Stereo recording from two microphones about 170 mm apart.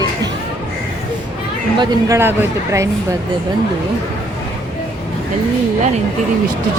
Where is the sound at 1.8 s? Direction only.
20° right (ahead or behind).